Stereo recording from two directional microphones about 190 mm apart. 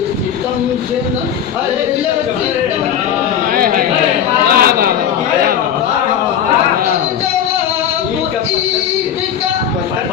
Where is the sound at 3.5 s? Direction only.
50° right (ahead or behind).